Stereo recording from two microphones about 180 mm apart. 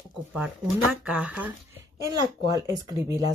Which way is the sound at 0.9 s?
5° right (ahead or behind).